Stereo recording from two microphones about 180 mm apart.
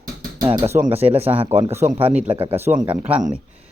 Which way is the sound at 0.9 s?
35° right (ahead or behind).